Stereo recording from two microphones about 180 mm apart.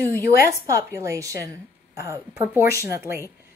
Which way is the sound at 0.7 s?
15° right (ahead or behind).